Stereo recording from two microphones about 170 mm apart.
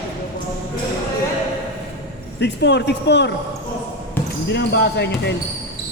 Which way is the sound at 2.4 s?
90° left.